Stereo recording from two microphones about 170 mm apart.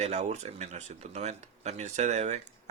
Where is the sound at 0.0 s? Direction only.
40° right (ahead or behind).